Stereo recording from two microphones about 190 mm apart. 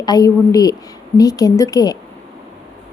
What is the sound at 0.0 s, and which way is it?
A woman's voice, 20° left (ahead or behind).